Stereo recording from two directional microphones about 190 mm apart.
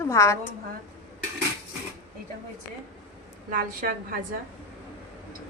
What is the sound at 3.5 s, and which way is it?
Speech, 45° right (ahead or behind).